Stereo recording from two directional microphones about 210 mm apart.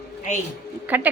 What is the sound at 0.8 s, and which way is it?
Speech, 10° right (ahead or behind).